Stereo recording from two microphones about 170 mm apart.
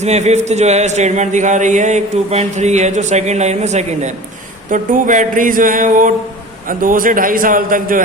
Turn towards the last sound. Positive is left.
turn(degrees=-55)  # may be behind; listen again after turning